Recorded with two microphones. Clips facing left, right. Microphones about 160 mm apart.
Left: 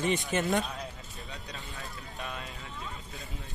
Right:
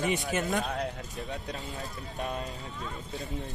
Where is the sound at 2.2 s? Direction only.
40° right (ahead or behind).